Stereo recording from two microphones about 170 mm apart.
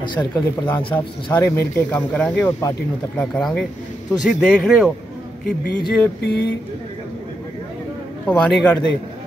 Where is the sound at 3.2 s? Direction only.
5° left (ahead or behind).